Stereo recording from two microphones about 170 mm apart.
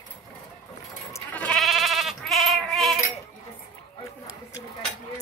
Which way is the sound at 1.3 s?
5° left (ahead or behind).